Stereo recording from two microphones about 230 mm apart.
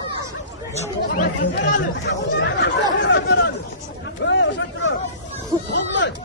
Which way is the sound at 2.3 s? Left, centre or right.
Left.